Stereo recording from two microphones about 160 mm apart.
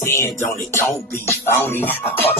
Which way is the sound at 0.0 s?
15° left (ahead or behind).